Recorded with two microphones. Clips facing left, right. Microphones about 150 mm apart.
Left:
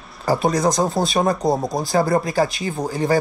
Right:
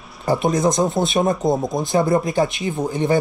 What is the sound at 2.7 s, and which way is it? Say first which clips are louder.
Speech: right 2 dB; centre (ahead or behind).